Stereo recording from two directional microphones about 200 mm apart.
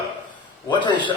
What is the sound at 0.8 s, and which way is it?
Speech, 25° left (ahead or behind).